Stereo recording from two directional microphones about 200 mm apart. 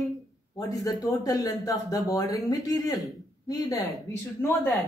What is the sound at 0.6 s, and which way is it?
Speech, 15° left (ahead or behind).